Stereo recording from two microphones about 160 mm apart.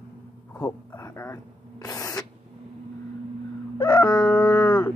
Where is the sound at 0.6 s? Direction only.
20° left (ahead or behind).